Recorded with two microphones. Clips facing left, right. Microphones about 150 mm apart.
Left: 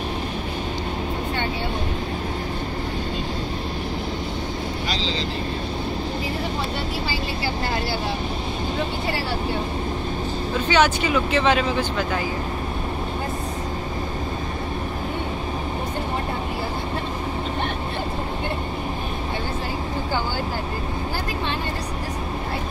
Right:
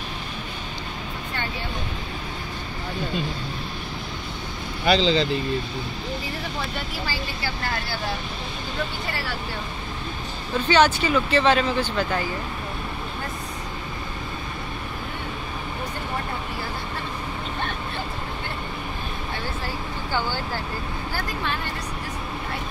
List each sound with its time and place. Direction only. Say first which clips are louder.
4.8 s speech: right 12 dB; 60° right (ahead or behind)
10.7 s speech: right 1 dB; 10° left (ahead or behind)